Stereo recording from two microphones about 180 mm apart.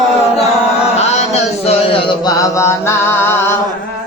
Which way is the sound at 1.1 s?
35° left (ahead or behind).